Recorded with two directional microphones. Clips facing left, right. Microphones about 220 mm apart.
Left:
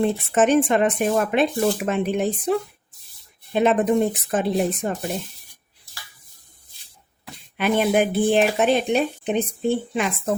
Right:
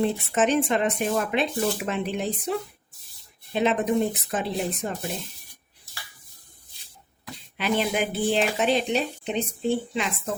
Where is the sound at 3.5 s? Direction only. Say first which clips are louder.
Left 4 dB; 50° left (ahead or behind).